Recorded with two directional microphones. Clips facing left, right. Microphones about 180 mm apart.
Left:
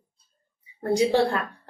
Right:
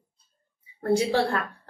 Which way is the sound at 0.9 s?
15° left (ahead or behind).